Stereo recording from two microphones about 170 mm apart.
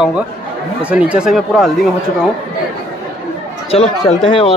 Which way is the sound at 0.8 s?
5° right (ahead or behind).